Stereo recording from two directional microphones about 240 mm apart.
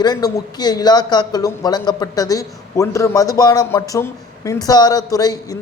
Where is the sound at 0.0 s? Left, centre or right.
Centre.